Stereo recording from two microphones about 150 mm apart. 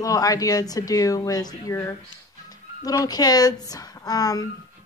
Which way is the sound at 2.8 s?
25° left (ahead or behind).